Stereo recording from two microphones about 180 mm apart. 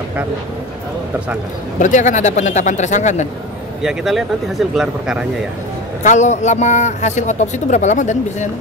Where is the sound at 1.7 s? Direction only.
45° left (ahead or behind).